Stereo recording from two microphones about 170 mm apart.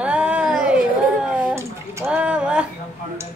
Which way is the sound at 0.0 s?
5° right (ahead or behind).